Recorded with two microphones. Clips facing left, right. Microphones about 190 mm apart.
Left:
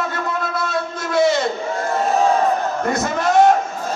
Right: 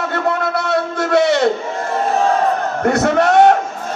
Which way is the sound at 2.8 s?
65° right (ahead or behind).